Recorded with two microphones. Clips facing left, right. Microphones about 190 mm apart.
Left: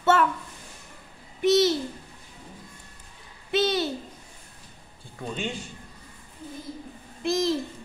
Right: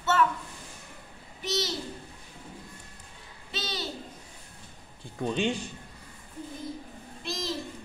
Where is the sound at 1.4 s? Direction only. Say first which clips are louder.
Left 12 dB; 55° left (ahead or behind).